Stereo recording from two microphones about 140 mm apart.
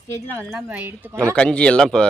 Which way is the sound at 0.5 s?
10° right (ahead or behind).